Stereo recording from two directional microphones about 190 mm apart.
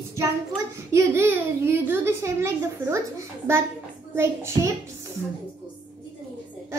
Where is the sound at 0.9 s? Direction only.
15° right (ahead or behind).